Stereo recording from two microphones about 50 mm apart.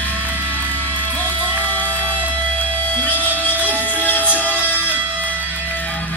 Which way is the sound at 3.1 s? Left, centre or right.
Right.